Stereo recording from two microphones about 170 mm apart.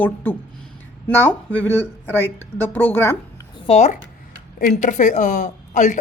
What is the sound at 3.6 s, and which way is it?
Speech, 40° left (ahead or behind).